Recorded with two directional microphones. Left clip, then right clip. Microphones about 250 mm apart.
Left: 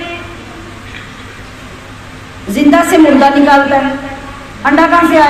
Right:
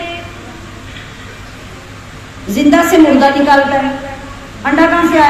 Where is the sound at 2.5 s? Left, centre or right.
Centre.